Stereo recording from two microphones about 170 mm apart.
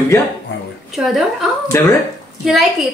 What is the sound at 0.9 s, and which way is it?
Speech, centre (ahead or behind).